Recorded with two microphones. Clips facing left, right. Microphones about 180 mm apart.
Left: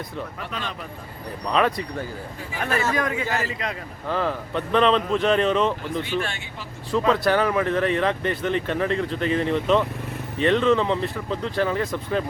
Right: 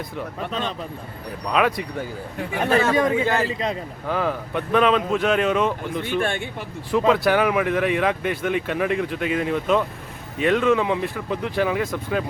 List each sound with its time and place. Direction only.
1.5 s speech: 5° right (ahead or behind)
2.6 s a man's voice: 25° right (ahead or behind)
4.1 s speech: 10° right (ahead or behind)
6.0 s speech: 50° right (ahead or behind)
6.9 s speech: 10° right (ahead or behind)